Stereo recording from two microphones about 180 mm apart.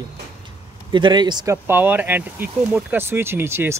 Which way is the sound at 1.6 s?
10° right (ahead or behind).